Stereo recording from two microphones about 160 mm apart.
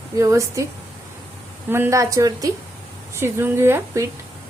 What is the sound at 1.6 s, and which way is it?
A woman's voice, 15° right (ahead or behind).